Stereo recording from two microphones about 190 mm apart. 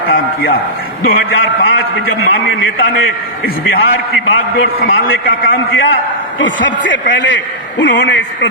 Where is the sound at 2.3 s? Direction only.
90° left.